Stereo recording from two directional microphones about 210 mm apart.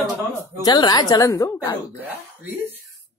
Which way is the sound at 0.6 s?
20° left (ahead or behind).